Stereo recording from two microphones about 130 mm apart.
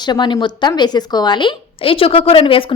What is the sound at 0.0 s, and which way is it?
A woman's voice, 35° left (ahead or behind).